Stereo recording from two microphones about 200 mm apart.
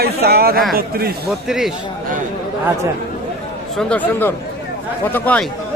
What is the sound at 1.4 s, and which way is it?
Speech, centre (ahead or behind).